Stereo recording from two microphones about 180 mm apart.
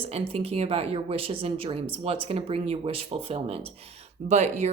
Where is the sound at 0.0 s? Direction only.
30° right (ahead or behind).